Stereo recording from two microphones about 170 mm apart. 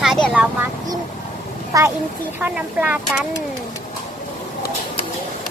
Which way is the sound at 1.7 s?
20° right (ahead or behind).